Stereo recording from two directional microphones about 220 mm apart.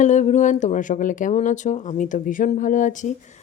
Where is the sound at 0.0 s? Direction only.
35° left (ahead or behind).